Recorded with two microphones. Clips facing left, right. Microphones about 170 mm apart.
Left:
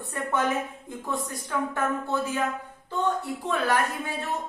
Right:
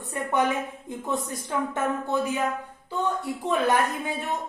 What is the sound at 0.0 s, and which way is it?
Speech, 15° right (ahead or behind).